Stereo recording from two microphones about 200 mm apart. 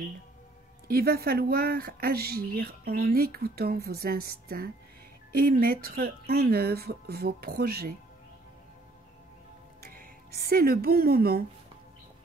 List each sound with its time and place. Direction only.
0.8 s speech: 50° right (ahead or behind)
9.8 s speech: 50° right (ahead or behind)